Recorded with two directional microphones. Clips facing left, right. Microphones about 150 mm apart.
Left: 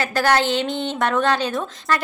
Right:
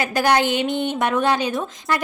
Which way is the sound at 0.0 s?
15° right (ahead or behind).